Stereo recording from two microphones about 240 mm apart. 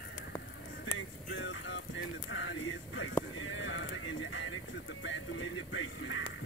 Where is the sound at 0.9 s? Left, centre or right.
Left.